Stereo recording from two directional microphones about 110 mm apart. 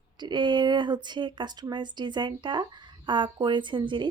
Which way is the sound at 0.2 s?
45° right (ahead or behind).